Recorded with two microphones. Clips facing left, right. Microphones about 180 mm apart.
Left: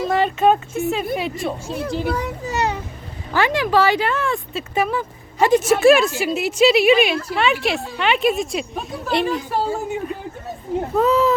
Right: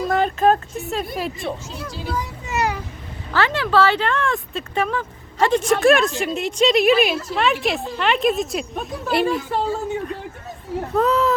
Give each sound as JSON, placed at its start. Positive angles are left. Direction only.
{"t": 0.1, "sound": "speech", "side_deg": 0}
{"t": 1.6, "sound": "speech", "side_deg": 55}
{"t": 2.5, "sound": "a child's voice", "side_deg": 25}
{"t": 3.3, "sound": "speech", "side_deg": 15}
{"t": 9.5, "sound": "speech", "side_deg": 10}